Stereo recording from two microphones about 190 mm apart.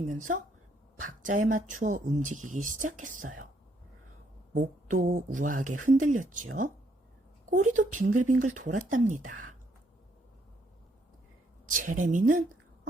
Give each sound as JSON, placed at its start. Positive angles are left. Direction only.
{"t": 1.0, "sound": "speech", "side_deg": -45}
{"t": 4.5, "sound": "speech", "side_deg": -40}
{"t": 11.7, "sound": "speech", "side_deg": -45}